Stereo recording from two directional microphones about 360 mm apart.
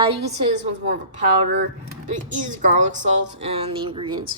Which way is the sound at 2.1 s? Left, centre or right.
Right.